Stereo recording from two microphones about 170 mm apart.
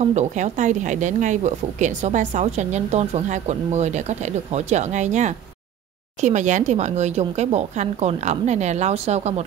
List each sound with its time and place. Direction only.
0.0 s speech: 45° right (ahead or behind)